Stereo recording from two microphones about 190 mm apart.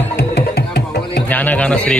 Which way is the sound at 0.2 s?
60° left (ahead or behind).